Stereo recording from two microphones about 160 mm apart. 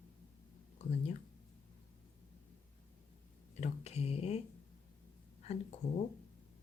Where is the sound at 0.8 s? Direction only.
45° left (ahead or behind).